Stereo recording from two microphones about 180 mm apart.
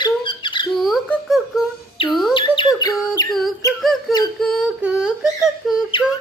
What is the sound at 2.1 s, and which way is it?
Bird, centre (ahead or behind).